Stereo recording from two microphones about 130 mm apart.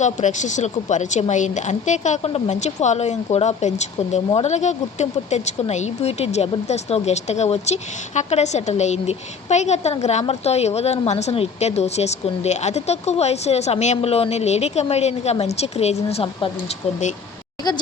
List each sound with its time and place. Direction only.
0.0 s a woman's voice: 70° left (ahead or behind); by 16.5 s 50° left (ahead or behind)